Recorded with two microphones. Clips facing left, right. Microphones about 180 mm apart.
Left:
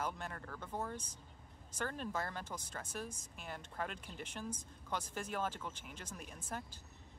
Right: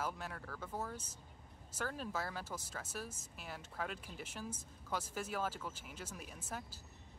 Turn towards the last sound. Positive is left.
turn(degrees=-5)  # may be behind; listen again after turning